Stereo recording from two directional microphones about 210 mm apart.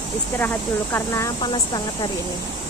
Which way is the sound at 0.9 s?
15° left (ahead or behind).